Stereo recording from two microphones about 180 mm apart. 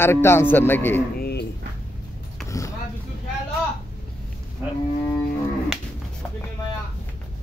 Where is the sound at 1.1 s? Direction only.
60° left (ahead or behind).